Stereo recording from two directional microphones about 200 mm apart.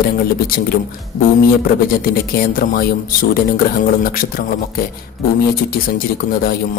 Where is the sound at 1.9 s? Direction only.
50° left (ahead or behind).